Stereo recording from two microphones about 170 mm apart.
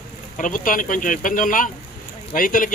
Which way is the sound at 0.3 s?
50° left (ahead or behind).